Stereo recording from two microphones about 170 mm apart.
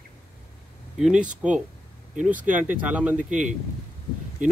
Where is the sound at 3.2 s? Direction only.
45° right (ahead or behind).